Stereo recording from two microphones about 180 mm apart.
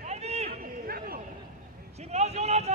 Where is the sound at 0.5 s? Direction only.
55° right (ahead or behind).